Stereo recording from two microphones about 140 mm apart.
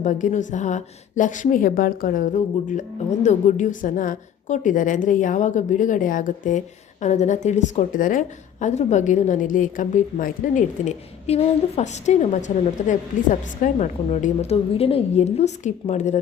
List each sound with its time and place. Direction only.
0.0 s a woman's voice: 60° left (ahead or behind)
7.0 s a woman's voice: 55° left (ahead or behind)
8.6 s a woman's voice: 60° left (ahead or behind)
14.5 s a woman's voice: 45° left (ahead or behind)